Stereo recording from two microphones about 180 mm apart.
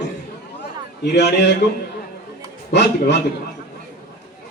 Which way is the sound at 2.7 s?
70° left (ahead or behind).